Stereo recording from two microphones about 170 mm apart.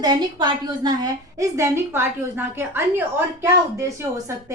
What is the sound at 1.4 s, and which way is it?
A woman's voice, 15° right (ahead or behind).